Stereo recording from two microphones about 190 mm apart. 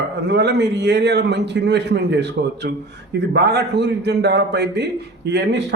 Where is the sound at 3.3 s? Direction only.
60° right (ahead or behind).